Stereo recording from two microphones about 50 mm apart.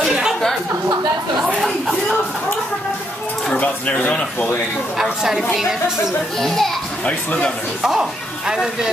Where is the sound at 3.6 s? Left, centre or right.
Left.